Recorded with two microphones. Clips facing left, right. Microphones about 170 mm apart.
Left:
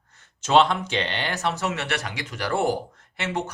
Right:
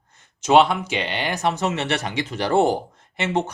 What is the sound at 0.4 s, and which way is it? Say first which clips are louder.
Speech: right 3 dB; 10° right (ahead or behind).